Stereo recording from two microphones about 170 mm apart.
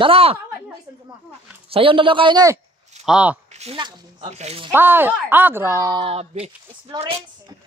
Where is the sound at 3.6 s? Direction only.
30° right (ahead or behind).